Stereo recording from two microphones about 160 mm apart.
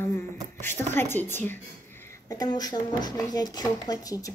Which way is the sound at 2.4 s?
25° left (ahead or behind).